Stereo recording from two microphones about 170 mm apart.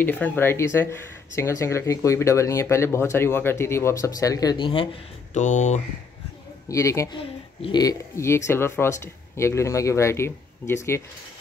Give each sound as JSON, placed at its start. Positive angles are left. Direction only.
{"t": 0.0, "sound": "speech", "side_deg": 10}
{"t": 5.3, "sound": "speech", "side_deg": 45}
{"t": 6.7, "sound": "speech", "side_deg": 15}
{"t": 7.2, "sound": "speech", "side_deg": 30}